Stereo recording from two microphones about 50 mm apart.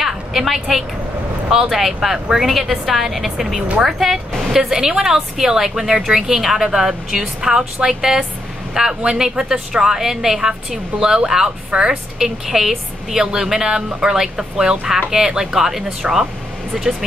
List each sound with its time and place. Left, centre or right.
0.0 s a sound: centre
1.5 s a woman's voice: centre
2.1 s a woman's voice: centre
2.4 s a woman's voice: centre
11.7 s a woman's voice: centre
12.4 s a woman's voice: centre